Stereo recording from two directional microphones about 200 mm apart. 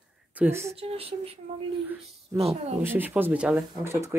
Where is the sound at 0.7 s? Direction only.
30° right (ahead or behind).